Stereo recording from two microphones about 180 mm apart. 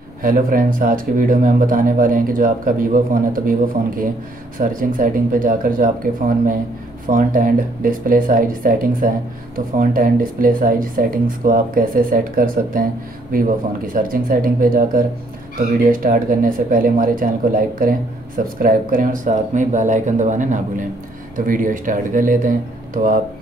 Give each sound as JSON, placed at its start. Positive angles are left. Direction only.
{"t": 0.2, "sound": "speech", "side_deg": -50}